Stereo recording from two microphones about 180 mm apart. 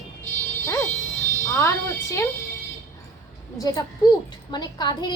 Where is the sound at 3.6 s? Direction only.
20° left (ahead or behind).